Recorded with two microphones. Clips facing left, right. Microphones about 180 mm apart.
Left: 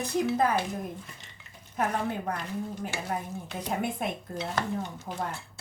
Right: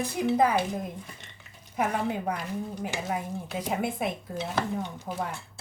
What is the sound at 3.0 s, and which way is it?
Dishes, 5° right (ahead or behind).